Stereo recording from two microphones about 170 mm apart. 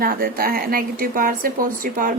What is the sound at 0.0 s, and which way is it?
A woman's voice, 60° right (ahead or behind).